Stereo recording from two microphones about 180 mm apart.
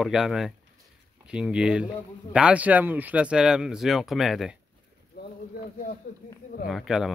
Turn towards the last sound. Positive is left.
turn(degrees=0)  # may be behind; listen again after turning